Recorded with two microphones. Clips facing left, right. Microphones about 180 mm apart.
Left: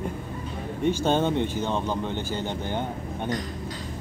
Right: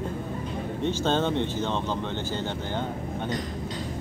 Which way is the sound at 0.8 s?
15° left (ahead or behind).